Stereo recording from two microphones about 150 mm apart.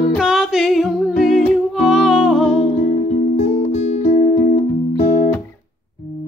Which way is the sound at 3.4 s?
45° left (ahead or behind).